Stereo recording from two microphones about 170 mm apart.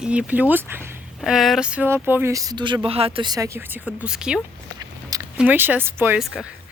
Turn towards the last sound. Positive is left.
turn(degrees=-15)  # may be behind; listen again after turning